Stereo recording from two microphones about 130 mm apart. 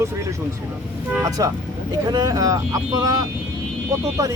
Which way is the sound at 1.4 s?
25° right (ahead or behind).